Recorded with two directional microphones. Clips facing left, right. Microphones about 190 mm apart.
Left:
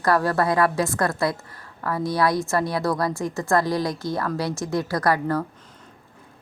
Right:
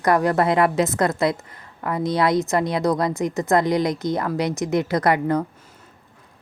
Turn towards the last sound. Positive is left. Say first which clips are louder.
# right 3 dB
turn(degrees=-20)  # may be behind; listen again after turning